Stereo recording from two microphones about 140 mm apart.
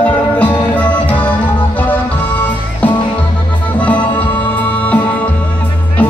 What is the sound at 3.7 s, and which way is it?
Music, 10° left (ahead or behind).